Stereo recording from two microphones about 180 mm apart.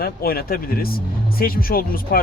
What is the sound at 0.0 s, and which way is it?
Speech, 55° left (ahead or behind).